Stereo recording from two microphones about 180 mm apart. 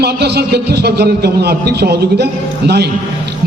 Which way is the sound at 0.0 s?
65° right (ahead or behind).